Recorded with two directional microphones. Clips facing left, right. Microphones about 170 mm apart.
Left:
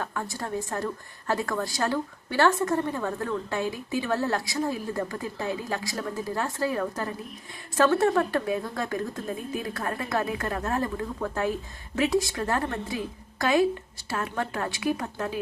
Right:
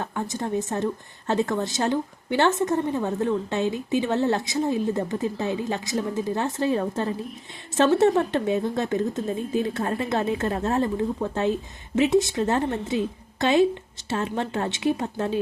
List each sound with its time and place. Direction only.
0.0 s a woman's voice: 20° right (ahead or behind)